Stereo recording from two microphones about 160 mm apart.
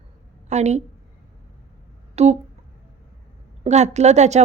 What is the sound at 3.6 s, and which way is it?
Speech, 45° right (ahead or behind).